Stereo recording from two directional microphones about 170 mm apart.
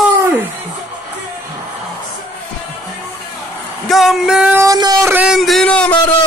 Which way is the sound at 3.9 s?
Centre (ahead or behind).